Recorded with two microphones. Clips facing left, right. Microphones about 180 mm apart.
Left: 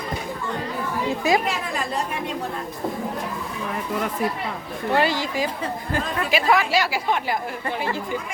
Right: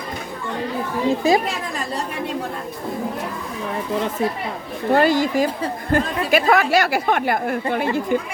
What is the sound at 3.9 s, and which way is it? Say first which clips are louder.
Speech: right 4 dB; 25° right (ahead or behind).